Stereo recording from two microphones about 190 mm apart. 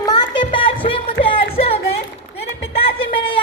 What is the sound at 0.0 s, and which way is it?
Music, 25° left (ahead or behind).